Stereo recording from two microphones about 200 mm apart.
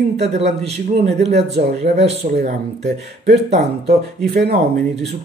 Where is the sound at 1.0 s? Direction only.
30° right (ahead or behind).